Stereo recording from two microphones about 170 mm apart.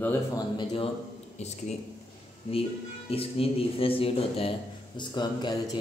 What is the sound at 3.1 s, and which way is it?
A man's voice, 35° left (ahead or behind).